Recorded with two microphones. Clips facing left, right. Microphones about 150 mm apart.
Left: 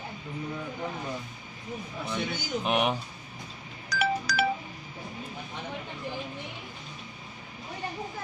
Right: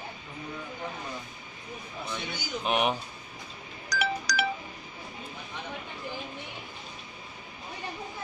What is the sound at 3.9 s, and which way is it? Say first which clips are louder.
Telephone dialing: left 2 dB; 55° left (ahead or behind).